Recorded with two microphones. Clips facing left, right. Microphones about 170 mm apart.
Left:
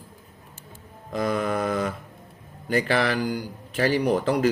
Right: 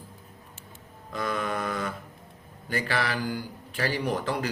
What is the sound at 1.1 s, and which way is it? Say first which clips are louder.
Speech: left 5 dB; 40° left (ahead or behind).